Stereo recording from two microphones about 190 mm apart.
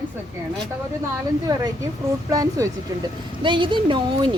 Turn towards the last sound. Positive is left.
turn(degrees=-25)  # may be behind; listen again after turning